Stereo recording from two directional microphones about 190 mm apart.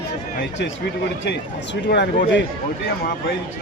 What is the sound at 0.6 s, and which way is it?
Speech, 65° left (ahead or behind).